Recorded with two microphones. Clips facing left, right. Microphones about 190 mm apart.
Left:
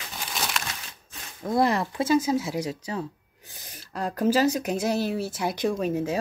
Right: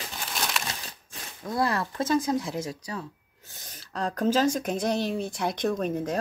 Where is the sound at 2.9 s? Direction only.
25° left (ahead or behind).